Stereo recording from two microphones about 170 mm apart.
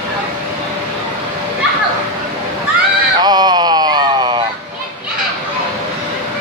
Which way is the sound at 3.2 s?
25° right (ahead or behind).